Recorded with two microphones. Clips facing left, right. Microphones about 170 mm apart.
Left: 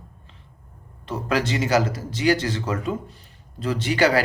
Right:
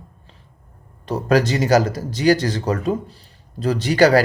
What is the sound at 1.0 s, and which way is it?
Speech, 40° right (ahead or behind).